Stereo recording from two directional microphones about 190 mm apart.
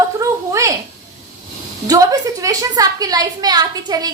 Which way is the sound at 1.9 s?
20° right (ahead or behind).